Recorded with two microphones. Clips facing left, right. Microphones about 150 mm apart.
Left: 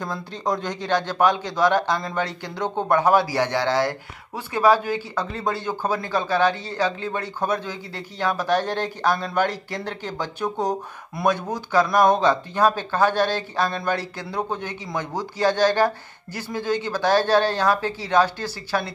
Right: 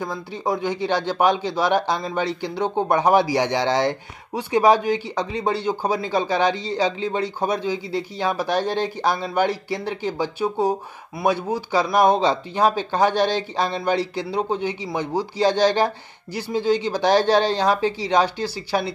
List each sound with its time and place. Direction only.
0.0 s a man's voice: 10° right (ahead or behind)